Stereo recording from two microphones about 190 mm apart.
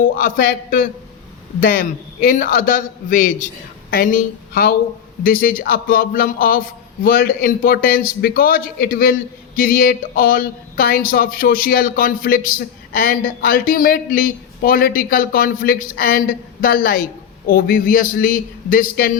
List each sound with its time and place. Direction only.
0.0 s speech: 50° left (ahead or behind)